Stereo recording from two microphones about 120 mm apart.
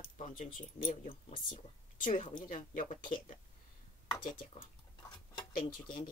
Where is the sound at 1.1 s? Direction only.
50° left (ahead or behind).